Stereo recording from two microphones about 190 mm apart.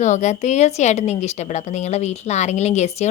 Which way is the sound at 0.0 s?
40° left (ahead or behind).